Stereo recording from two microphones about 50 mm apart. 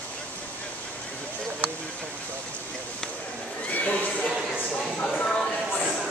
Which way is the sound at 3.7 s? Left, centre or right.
Left.